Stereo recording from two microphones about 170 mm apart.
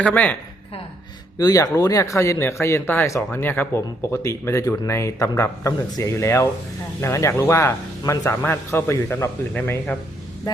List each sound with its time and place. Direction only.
0.0 s speech: 10° left (ahead or behind)
1.4 s speech: 20° left (ahead or behind)